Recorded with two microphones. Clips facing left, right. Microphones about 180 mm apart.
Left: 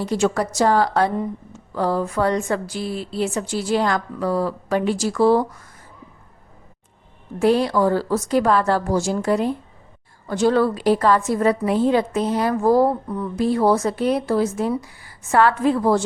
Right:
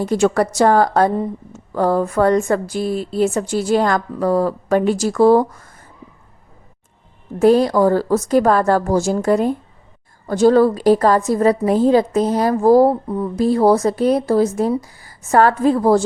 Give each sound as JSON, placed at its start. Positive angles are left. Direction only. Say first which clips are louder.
{"t": 0.0, "sound": "a woman's voice", "louder": "right 5 dB", "side_deg": -50}
{"t": 1.7, "sound": "a woman's voice", "louder": "right 5 dB", "side_deg": -50}
{"t": 7.3, "sound": "a woman's voice", "louder": "right 5 dB", "side_deg": -45}